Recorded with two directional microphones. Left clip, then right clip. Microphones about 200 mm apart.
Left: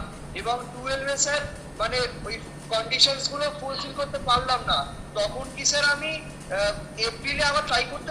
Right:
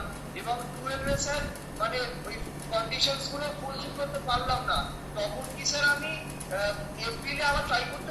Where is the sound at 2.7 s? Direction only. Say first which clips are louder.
Left 6 dB; 60° left (ahead or behind).